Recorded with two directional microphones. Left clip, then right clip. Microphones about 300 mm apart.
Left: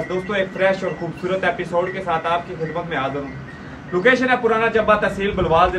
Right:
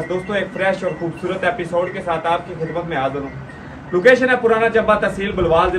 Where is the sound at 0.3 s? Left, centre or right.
Centre.